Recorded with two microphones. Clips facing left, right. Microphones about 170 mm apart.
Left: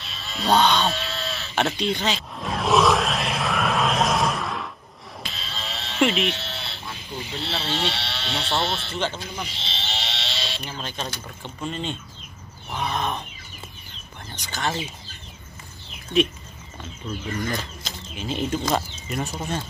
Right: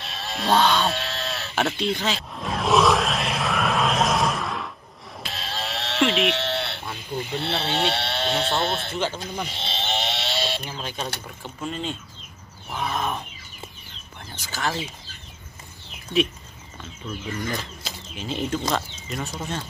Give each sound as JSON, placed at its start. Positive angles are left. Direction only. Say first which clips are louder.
{"t": 0.0, "sound": "a sound", "louder": "right 2 dB", "side_deg": -60}
{"t": 0.6, "sound": "speech", "louder": "even", "side_deg": -5}
{"t": 0.9, "sound": "chicken", "louder": "right 1 dB", "side_deg": -60}
{"t": 1.5, "sound": "a sound", "louder": "left 1 dB", "side_deg": -5}
{"t": 5.3, "sound": "sheep", "louder": "right 7 dB", "side_deg": -60}
{"t": 8.9, "sound": "speech", "louder": "right 1 dB", "side_deg": -10}
{"t": 9.2, "sound": "sheep", "louder": "right 3 dB", "side_deg": -50}
{"t": 10.7, "sound": "speech", "louder": "right 1 dB", "side_deg": -10}
{"t": 12.6, "sound": "roaring cats", "louder": "even", "side_deg": 0}
{"t": 14.3, "sound": "speech", "louder": "even", "side_deg": -5}
{"t": 17.8, "sound": "speech", "louder": "left 1 dB", "side_deg": 0}
{"t": 19.3, "sound": "speech", "louder": "left 2 dB", "side_deg": 15}